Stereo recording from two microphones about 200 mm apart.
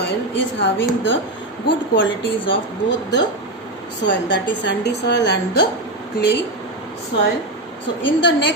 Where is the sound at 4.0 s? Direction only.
65° left (ahead or behind).